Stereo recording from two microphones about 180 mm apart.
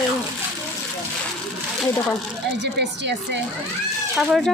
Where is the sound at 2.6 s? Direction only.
75° right (ahead or behind).